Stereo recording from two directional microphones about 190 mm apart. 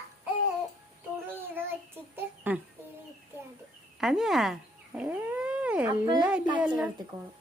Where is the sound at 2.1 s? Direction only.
10° right (ahead or behind).